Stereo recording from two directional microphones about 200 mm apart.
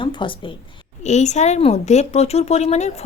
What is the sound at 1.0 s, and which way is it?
A woman's voice, 35° left (ahead or behind).